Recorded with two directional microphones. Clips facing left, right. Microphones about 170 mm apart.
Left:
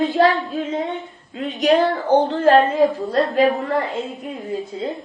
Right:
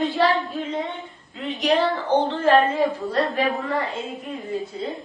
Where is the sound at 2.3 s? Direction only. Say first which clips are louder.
Left 3 dB; 40° left (ahead or behind).